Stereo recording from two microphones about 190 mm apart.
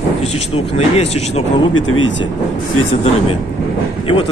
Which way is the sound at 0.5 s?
30° left (ahead or behind).